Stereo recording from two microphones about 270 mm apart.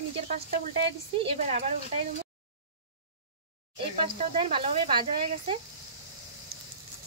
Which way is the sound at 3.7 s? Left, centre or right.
Centre.